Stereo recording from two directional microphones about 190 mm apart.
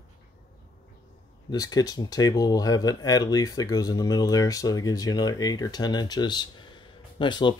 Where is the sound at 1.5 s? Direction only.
20° left (ahead or behind).